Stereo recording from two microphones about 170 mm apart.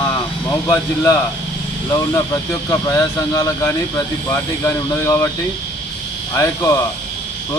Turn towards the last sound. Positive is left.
turn(degrees=20)  # may be behind; listen again after turning